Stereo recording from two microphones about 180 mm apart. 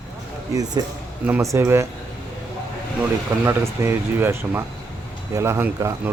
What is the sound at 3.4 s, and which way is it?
A man's voice, 15° right (ahead or behind).